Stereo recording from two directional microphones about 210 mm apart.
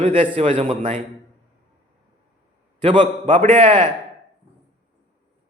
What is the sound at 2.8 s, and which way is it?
Speech, 25° right (ahead or behind).